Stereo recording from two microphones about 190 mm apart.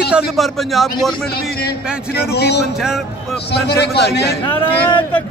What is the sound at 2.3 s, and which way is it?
Speech, 60° left (ahead or behind).